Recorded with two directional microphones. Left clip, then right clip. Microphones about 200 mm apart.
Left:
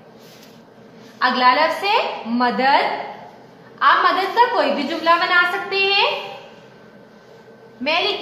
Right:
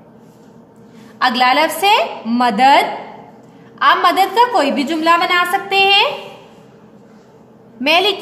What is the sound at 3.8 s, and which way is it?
A woman's voice, 55° right (ahead or behind).